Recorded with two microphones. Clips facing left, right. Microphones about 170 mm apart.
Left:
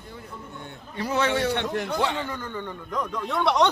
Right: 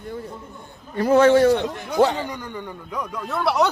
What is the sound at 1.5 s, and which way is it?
Speech, 65° left (ahead or behind).